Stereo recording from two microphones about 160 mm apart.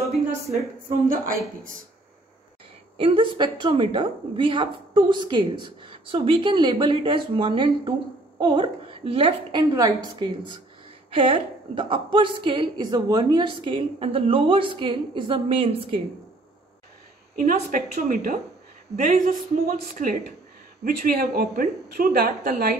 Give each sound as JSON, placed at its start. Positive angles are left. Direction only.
{"t": 0.8, "sound": "a woman's voice", "side_deg": -60}
{"t": 3.0, "sound": "a woman's voice", "side_deg": -30}
{"t": 17.4, "sound": "a woman's voice", "side_deg": -55}